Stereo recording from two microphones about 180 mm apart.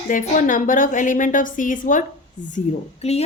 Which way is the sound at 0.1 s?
45° left (ahead or behind).